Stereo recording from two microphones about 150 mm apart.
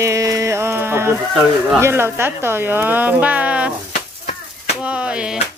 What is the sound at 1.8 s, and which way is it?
Speech, 15° right (ahead or behind).